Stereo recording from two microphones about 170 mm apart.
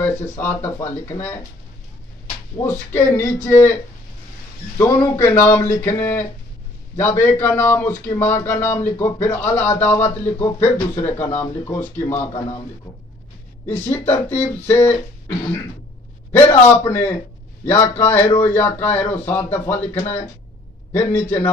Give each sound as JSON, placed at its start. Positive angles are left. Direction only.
{"t": 0.0, "sound": "speech", "side_deg": 15}
{"t": 2.6, "sound": "speech", "side_deg": 15}
{"t": 4.7, "sound": "speech", "side_deg": 15}
{"t": 13.8, "sound": "speech", "side_deg": 15}
{"t": 16.6, "sound": "speech", "side_deg": 15}
{"t": 18.2, "sound": "speech", "side_deg": 35}
{"t": 18.5, "sound": "speech", "side_deg": 10}